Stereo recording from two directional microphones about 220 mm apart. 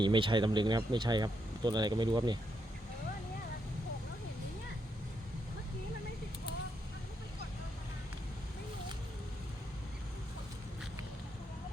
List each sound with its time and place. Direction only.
0.0 s speech: 20° right (ahead or behind)